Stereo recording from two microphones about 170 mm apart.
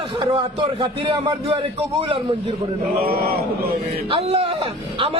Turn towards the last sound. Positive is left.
turn(degrees=-30)  # may be behind; listen again after turning